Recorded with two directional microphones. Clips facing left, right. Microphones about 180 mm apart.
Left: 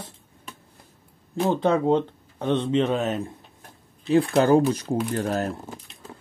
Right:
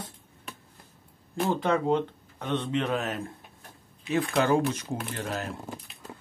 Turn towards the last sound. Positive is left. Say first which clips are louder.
# left 8 dB
turn(degrees=40)  # may be behind; listen again after turning